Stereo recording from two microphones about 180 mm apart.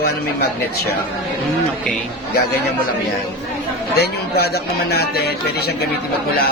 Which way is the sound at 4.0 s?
60° left (ahead or behind).